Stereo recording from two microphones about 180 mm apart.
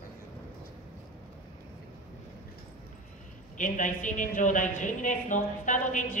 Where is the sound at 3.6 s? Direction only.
45° left (ahead or behind).